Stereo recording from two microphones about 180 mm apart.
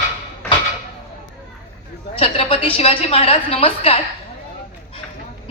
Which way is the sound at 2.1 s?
35° left (ahead or behind).